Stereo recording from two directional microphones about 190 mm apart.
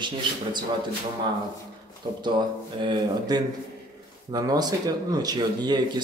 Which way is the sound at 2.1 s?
30° right (ahead or behind).